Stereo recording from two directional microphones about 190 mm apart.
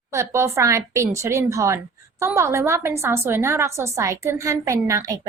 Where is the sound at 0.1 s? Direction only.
15° right (ahead or behind).